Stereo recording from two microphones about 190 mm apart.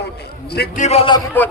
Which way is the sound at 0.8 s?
35° left (ahead or behind).